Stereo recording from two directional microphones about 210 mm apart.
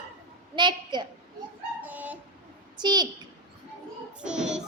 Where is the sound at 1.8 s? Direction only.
5° right (ahead or behind).